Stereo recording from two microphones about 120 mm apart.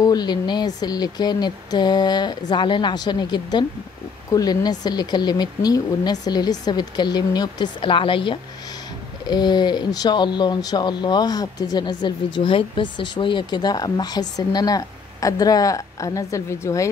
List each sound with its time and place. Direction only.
0.0 s speech: 35° left (ahead or behind)